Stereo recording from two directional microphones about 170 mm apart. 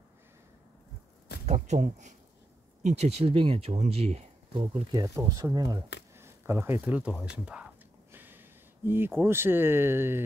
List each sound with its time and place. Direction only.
1.4 s speech: 40° right (ahead or behind)
4.6 s speech: 25° right (ahead or behind); by 7.6 s 5° right (ahead or behind)
8.1 s a sound: 10° right (ahead or behind)
9.2 s speech: 15° right (ahead or behind)